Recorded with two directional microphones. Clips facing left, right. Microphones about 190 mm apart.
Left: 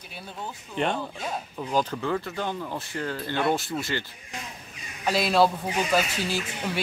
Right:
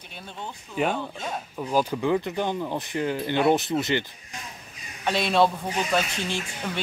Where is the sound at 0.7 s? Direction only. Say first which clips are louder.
Right 1 dB; centre (ahead or behind); by 4.0 s 20° right (ahead or behind).